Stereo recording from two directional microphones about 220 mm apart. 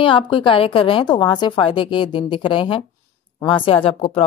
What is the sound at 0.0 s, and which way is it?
Speech, 20° left (ahead or behind).